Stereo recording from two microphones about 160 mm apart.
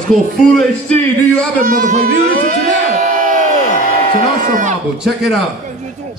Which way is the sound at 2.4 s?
55° right (ahead or behind).